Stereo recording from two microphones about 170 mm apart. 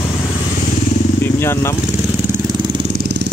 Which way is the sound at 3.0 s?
90° right.